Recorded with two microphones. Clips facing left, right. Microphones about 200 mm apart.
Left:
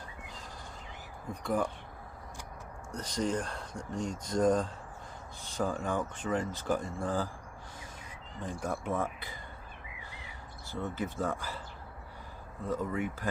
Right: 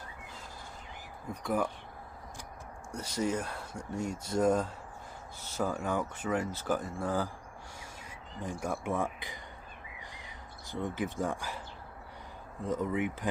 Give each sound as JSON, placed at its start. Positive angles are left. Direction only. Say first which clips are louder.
{"t": 1.5, "sound": "speech", "louder": "even", "side_deg": -5}
{"t": 2.9, "sound": "speech", "louder": "even", "side_deg": -10}
{"t": 8.4, "sound": "speech", "louder": "even", "side_deg": -10}
{"t": 10.7, "sound": "speech", "louder": "right 1 dB", "side_deg": -15}
{"t": 12.6, "sound": "speech", "louder": "right 2 dB", "side_deg": -20}